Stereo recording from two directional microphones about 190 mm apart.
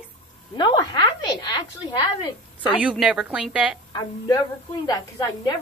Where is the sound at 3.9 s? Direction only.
20° left (ahead or behind).